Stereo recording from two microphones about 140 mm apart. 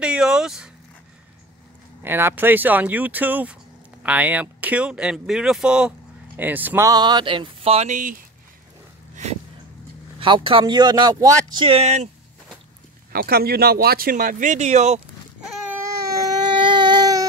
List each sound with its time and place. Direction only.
0.0 s vehicle: 5° right (ahead or behind)
2.0 s speech: 15° right (ahead or behind)
6.9 s speech: 30° right (ahead or behind); by 7.9 s 45° right (ahead or behind)
7.9 s speech: 70° right (ahead or behind)
9.1 s a sound: 55° right (ahead or behind)
10.1 s speech: 35° right (ahead or behind)
13.1 s speech: 90° right; by 15.0 s 55° right (ahead or behind)
16.4 s baby cry: 35° right (ahead or behind)